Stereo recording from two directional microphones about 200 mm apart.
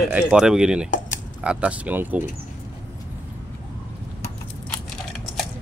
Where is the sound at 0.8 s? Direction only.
40° left (ahead or behind).